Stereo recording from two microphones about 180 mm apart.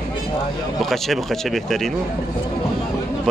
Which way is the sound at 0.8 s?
Centre (ahead or behind).